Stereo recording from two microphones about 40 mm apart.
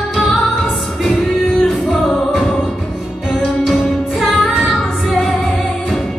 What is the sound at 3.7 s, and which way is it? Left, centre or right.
Music, centre.